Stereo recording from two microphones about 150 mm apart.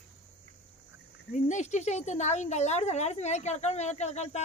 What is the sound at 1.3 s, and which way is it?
A woman's voice, 50° left (ahead or behind).